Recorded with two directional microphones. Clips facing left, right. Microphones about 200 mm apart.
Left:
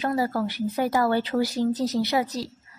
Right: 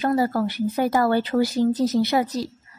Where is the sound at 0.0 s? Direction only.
45° right (ahead or behind).